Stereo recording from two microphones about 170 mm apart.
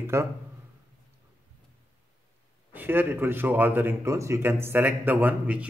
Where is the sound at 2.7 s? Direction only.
10° right (ahead or behind).